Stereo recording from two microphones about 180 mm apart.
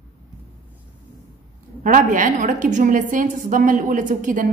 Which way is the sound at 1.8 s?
45° right (ahead or behind).